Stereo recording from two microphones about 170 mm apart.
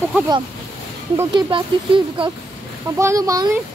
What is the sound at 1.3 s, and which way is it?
Speech, 30° right (ahead or behind).